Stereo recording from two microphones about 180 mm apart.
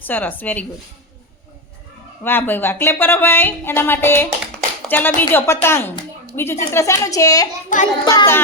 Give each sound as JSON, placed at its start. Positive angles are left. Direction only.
{"t": 0.0, "sound": "speech", "side_deg": 10}
{"t": 2.2, "sound": "speech", "side_deg": 10}